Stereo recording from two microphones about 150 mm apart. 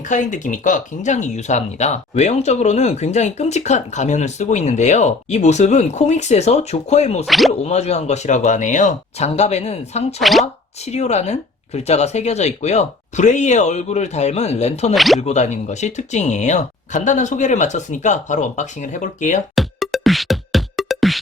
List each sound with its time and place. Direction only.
0.1 s speech: 55° left (ahead or behind)
7.3 s speech: centre (ahead or behind)
7.6 s speech: 45° left (ahead or behind)
10.2 s speech: centre (ahead or behind)
10.4 s speech: 45° left (ahead or behind)
14.9 s speech: centre (ahead or behind)
15.2 s speech: 50° left (ahead or behind)
19.5 s music: centre (ahead or behind)